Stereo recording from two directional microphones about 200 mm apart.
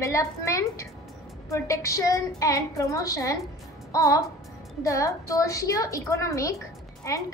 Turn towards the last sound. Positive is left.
turn(degrees=15)  # may be behind; listen again after turning